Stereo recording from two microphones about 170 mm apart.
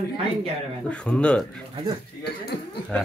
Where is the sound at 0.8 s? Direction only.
5° left (ahead or behind).